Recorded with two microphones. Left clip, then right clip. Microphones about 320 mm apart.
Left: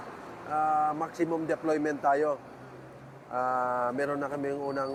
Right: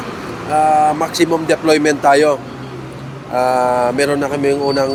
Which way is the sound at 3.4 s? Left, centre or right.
Left.